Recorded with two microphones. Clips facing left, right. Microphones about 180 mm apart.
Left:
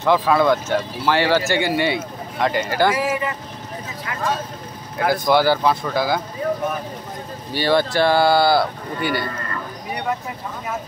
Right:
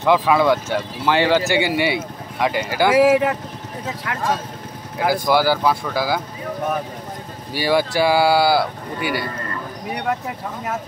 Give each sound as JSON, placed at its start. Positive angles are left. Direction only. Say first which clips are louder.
{"t": 0.0, "sound": "speech", "louder": "right 1 dB", "side_deg": -15}
{"t": 2.9, "sound": "speech", "louder": "right 8 dB", "side_deg": -85}
{"t": 3.8, "sound": "speech", "louder": "right 7 dB", "side_deg": -70}
{"t": 4.9, "sound": "speech", "louder": "even", "side_deg": -10}
{"t": 7.5, "sound": "speech", "louder": "even", "side_deg": -10}